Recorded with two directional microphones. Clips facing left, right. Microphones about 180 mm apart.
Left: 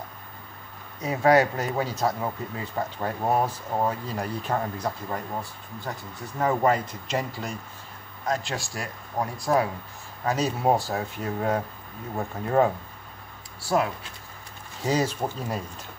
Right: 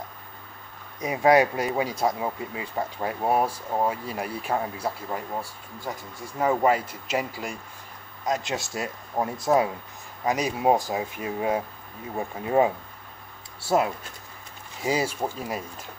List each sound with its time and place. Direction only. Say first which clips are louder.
1.0 s speech: right 1 dB; 15° right (ahead or behind)
8.3 s speech: right 1 dB; 20° right (ahead or behind)
13.6 s speech: right 1 dB; 25° right (ahead or behind)
14.8 s speech: left 1 dB; 10° right (ahead or behind)